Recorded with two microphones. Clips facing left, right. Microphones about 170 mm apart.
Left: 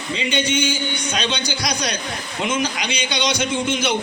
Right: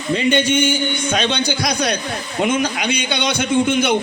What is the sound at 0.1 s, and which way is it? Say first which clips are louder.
A man's voice: right 6 dB; 50° right (ahead or behind).